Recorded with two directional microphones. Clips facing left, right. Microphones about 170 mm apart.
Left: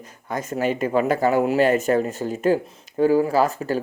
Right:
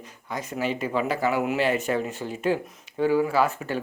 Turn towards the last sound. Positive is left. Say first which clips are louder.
# left 4 dB
turn(degrees=40)  # may be behind; listen again after turning